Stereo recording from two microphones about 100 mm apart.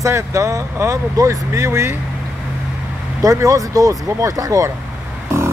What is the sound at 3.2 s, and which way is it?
Speech, 35° right (ahead or behind).